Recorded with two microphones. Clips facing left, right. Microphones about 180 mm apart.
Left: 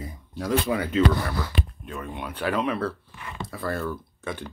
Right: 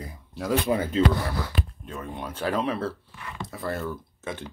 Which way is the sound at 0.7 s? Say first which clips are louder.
Even; 30° right (ahead or behind).